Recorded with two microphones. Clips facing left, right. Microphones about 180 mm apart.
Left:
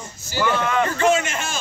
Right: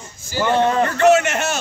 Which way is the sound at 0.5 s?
35° right (ahead or behind).